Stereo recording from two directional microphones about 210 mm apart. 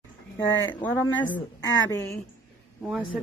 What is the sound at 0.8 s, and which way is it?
Speech, 10° left (ahead or behind).